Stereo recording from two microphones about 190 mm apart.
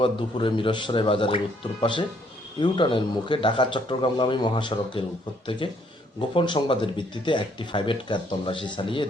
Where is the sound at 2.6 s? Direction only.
25° left (ahead or behind).